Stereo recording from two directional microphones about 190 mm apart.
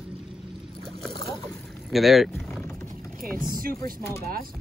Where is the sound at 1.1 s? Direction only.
20° left (ahead or behind).